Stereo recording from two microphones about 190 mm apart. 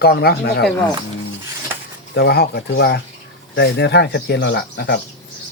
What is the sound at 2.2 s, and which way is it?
Speech, 55° left (ahead or behind).